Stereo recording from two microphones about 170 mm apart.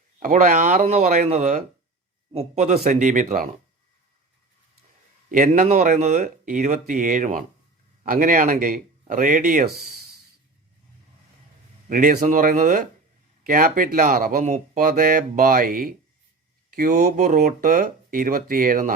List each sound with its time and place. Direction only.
0.2 s speech: 50° right (ahead or behind)
5.3 s speech: 45° right (ahead or behind)
11.9 s speech: 50° right (ahead or behind)